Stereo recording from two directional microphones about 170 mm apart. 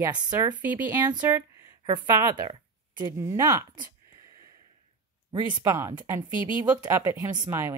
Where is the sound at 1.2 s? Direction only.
15° right (ahead or behind).